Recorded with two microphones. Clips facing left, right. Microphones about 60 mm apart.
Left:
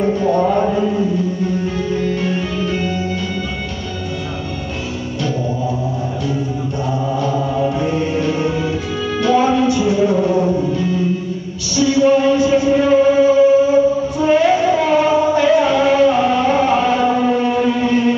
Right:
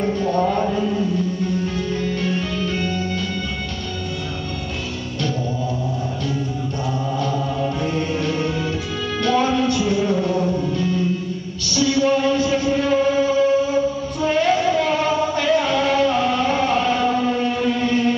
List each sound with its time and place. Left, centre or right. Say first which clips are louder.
0.0 s music: left 4 dB; centre
7.2 s music: left 5 dB; centre